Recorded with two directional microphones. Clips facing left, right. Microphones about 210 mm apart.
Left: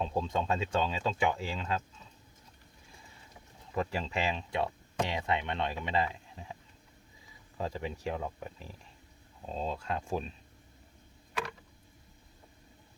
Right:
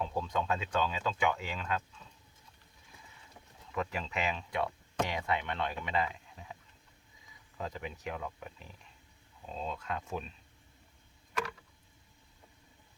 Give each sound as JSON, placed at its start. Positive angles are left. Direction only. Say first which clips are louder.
{"t": 0.0, "sound": "speech", "louder": "left 2 dB", "side_deg": 25}
{"t": 3.7, "sound": "speech", "louder": "left 3 dB", "side_deg": 30}
{"t": 7.6, "sound": "speech", "louder": "left 4 dB", "side_deg": 30}